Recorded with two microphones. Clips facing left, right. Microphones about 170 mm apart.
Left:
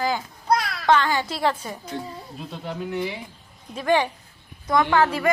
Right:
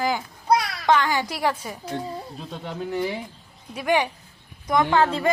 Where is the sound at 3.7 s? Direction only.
15° right (ahead or behind).